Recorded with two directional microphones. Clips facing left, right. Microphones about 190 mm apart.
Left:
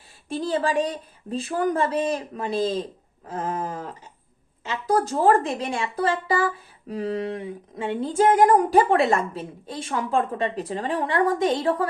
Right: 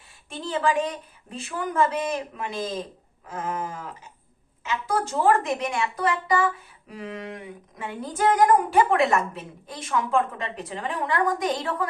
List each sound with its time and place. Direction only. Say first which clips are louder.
0.3 s a woman's voice: left 1 dB; 35° left (ahead or behind)